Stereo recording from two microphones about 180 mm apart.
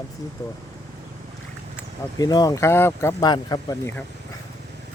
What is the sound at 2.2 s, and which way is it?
Speech, 20° left (ahead or behind).